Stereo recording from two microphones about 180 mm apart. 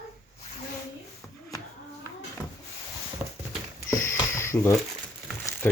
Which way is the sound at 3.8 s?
15° left (ahead or behind).